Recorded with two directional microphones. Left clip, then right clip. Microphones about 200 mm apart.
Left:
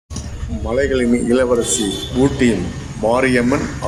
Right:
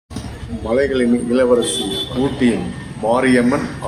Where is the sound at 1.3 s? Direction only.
30° left (ahead or behind).